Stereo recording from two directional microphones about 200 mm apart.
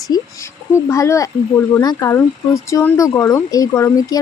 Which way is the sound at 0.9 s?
15° left (ahead or behind).